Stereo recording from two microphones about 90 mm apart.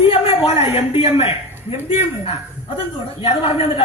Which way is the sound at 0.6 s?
90° left.